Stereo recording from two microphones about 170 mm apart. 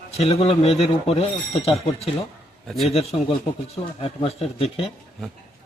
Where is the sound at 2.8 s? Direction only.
35° left (ahead or behind).